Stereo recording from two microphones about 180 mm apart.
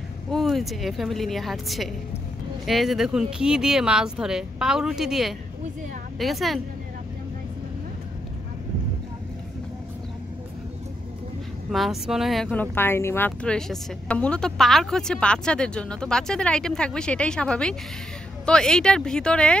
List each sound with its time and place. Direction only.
0.3 s speech: centre (ahead or behind)
11.7 s speech: centre (ahead or behind)